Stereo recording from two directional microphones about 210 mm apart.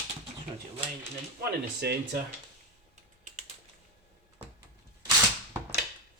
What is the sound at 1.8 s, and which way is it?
Speech, 50° right (ahead or behind).